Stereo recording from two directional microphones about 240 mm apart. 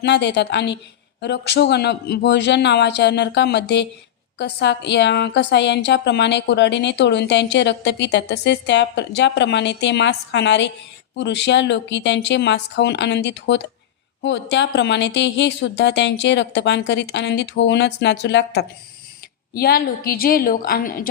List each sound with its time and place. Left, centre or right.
0.0 s a woman's voice: left